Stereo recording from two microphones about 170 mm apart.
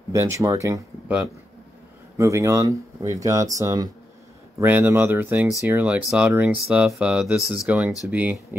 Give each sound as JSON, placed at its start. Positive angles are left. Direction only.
{"t": 0.1, "sound": "speech", "side_deg": -15}
{"t": 2.1, "sound": "speech", "side_deg": -20}